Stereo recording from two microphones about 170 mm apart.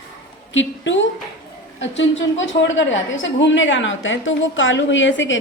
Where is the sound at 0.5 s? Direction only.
90° left.